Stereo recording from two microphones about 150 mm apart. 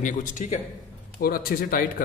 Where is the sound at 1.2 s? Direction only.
85° left.